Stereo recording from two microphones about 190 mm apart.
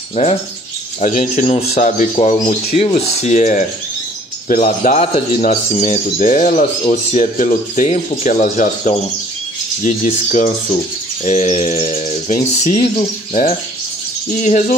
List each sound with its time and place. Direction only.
0.1 s speech: 35° left (ahead or behind)